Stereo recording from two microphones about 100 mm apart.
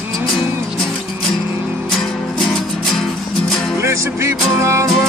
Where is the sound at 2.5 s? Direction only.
5° left (ahead or behind).